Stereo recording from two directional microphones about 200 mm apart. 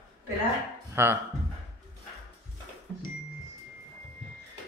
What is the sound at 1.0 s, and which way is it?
Speech, 10° right (ahead or behind).